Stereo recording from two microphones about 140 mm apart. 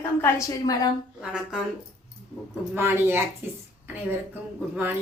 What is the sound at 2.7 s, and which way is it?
Speech, 15° right (ahead or behind).